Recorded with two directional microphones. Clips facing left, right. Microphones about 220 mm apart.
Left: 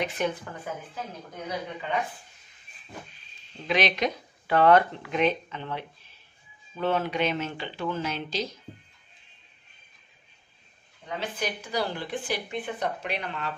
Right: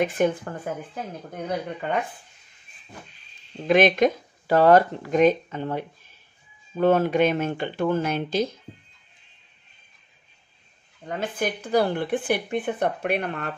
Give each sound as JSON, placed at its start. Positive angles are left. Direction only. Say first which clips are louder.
{"t": 0.0, "sound": "speech", "louder": "right 7 dB", "side_deg": -50}
{"t": 3.6, "sound": "speech", "louder": "right 8 dB", "side_deg": -50}
{"t": 11.1, "sound": "speech", "louder": "right 5 dB", "side_deg": -50}